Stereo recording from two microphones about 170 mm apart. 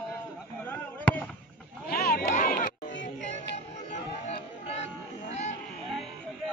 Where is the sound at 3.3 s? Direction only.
40° left (ahead or behind).